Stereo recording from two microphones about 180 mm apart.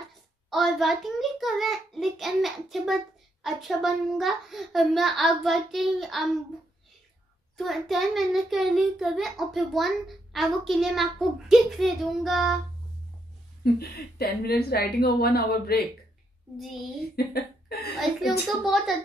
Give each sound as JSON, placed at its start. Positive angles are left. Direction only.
{"t": 0.5, "sound": "a child's voice", "side_deg": 0}
{"t": 7.5, "sound": "a child's voice", "side_deg": 0}
{"t": 13.7, "sound": "a woman's voice", "side_deg": 60}
{"t": 17.1, "sound": "a sound", "side_deg": 60}
{"t": 18.6, "sound": "a child's voice", "side_deg": 0}